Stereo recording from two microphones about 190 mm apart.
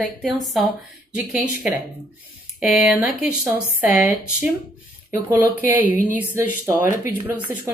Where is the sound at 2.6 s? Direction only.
Centre (ahead or behind).